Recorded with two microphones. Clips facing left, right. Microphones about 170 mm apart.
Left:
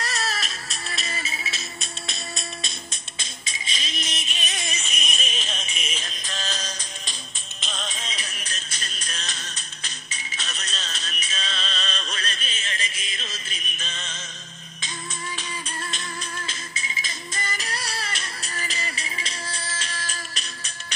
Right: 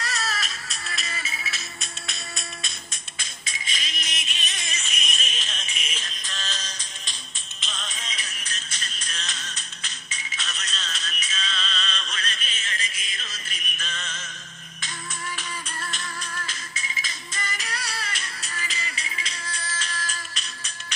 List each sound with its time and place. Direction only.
0.0 s music: 35° left (ahead or behind)
4.5 s a sound: 40° left (ahead or behind)
5.5 s music: 40° left (ahead or behind)
15.3 s music: 20° left (ahead or behind)
17.0 s music: 35° left (ahead or behind)